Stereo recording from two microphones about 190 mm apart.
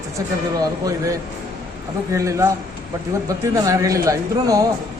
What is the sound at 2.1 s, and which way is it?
Speech, 15° right (ahead or behind).